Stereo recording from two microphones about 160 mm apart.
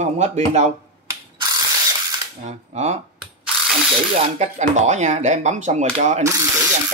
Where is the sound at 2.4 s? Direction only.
45° right (ahead or behind).